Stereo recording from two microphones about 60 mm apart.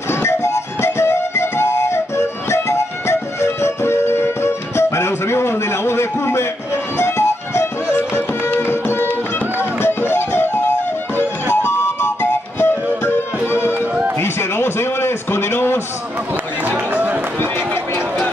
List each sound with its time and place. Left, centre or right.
0.1 s music: left
11.6 s music: left
14.2 s a sound: left
16.9 s run: right